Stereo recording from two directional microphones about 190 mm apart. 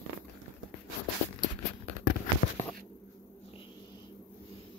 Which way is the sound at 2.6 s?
35° left (ahead or behind).